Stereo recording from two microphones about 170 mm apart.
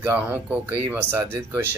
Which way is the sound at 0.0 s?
10° right (ahead or behind).